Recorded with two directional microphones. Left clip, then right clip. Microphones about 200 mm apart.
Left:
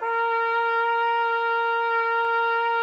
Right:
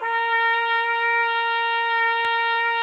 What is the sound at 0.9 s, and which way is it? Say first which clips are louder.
Wind instrument: right 1 dB; 20° right (ahead or behind).